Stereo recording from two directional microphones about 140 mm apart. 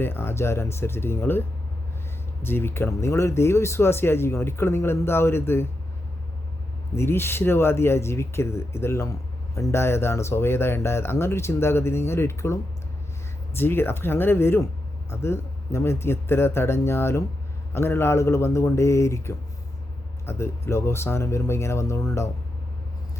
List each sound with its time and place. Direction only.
0.0 s speech: 15° left (ahead or behind)
6.9 s speech: 15° left (ahead or behind)